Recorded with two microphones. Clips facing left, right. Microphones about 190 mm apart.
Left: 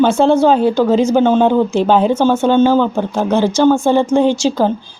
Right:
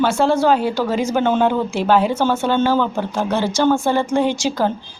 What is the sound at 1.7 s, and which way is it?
Speech, 10° right (ahead or behind).